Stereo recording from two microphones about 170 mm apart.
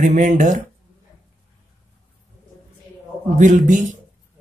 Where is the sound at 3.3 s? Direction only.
50° right (ahead or behind).